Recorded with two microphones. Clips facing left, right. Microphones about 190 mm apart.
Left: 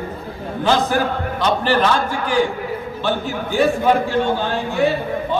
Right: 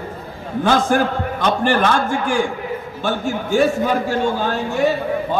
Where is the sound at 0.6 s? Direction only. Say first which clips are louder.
Right 1 dB; 50° right (ahead or behind).